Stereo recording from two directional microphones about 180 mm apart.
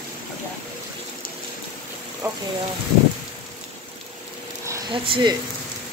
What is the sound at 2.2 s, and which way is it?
Speech, 15° right (ahead or behind).